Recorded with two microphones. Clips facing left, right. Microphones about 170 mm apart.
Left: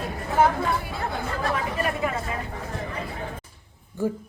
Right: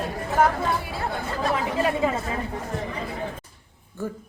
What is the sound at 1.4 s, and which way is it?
Speech, 20° right (ahead or behind).